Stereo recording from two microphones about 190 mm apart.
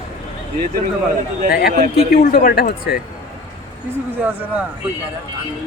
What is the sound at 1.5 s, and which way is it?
Speech, 50° left (ahead or behind).